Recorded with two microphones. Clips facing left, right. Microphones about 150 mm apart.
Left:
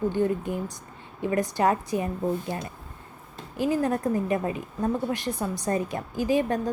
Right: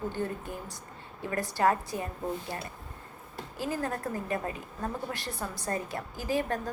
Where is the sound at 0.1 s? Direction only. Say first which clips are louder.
Left 9 dB; 20° left (ahead or behind).